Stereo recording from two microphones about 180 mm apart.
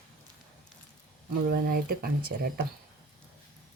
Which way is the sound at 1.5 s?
55° right (ahead or behind).